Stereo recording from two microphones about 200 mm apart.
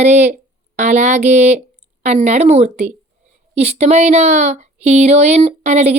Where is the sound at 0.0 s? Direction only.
35° right (ahead or behind).